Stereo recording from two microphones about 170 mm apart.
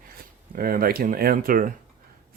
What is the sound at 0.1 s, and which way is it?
Speech, 60° right (ahead or behind).